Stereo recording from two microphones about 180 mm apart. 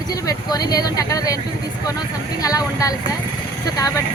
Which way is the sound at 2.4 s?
20° left (ahead or behind).